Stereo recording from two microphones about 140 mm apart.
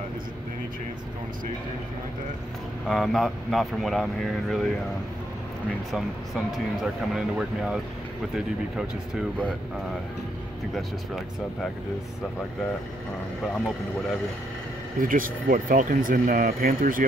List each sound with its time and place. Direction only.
2.9 s speech: centre (ahead or behind)
5.9 s speech: centre (ahead or behind)
15.0 s speech: 80° right